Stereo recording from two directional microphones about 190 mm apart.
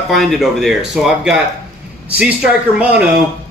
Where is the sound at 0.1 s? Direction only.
Centre (ahead or behind).